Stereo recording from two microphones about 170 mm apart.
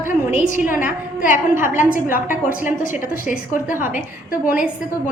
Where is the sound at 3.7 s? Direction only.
15° right (ahead or behind).